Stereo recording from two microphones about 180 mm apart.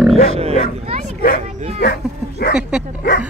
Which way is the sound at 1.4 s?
35° right (ahead or behind).